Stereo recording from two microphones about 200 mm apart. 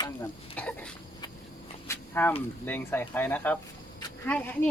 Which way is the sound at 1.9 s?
10° left (ahead or behind).